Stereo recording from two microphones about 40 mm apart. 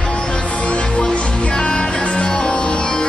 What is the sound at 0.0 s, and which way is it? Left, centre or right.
Music, left.